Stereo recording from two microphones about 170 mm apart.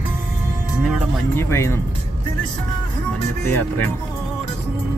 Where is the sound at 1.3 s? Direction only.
15° left (ahead or behind).